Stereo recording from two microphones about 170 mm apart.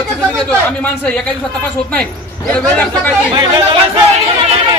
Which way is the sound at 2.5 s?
10° left (ahead or behind).